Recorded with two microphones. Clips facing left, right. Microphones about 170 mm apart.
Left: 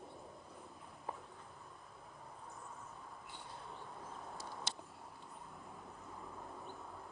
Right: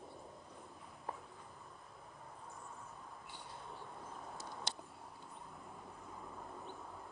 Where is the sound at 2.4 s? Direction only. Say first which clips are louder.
Even; centre (ahead or behind).